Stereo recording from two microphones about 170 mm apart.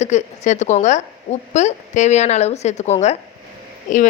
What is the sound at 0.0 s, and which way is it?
A woman's voice, 45° left (ahead or behind).